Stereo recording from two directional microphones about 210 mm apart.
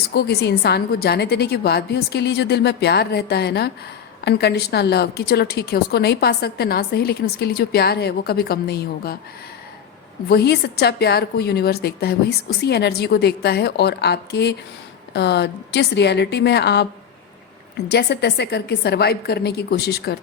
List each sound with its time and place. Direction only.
0.1 s a woman's voice: 50° left (ahead or behind)
10.2 s a woman's voice: 50° left (ahead or behind)
17.8 s a woman's voice: 50° left (ahead or behind)